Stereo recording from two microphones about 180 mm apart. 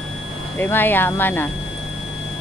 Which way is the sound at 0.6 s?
10° left (ahead or behind).